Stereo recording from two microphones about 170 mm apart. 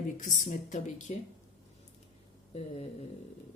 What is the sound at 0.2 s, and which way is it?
Speech, 50° left (ahead or behind).